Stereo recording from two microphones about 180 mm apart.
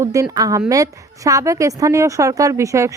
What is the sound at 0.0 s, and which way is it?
A woman's voice, 20° right (ahead or behind).